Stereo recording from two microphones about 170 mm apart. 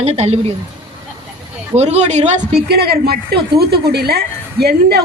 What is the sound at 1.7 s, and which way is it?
Speech, 40° right (ahead or behind).